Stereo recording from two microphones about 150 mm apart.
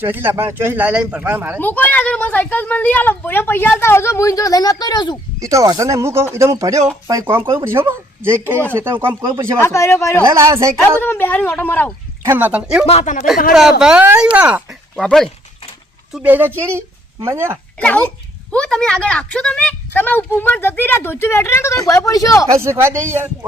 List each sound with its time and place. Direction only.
0.0 s speech: 15° right (ahead or behind)
1.5 s speech: 10° left (ahead or behind); by 5.1 s 30° left (ahead or behind)
5.4 s speech: 20° right (ahead or behind)
9.6 s a man's voice: 20° left (ahead or behind)
10.2 s speech: 20° right (ahead or behind)
11.0 s speech: 15° left (ahead or behind)
12.2 s speech: 15° right (ahead or behind)
12.8 s speech: 45° left (ahead or behind)
13.5 s speech: 5° right (ahead or behind)
16.1 s speech: 10° right (ahead or behind)
17.7 s speech: 10° left (ahead or behind)
22.5 s speech: 15° right (ahead or behind)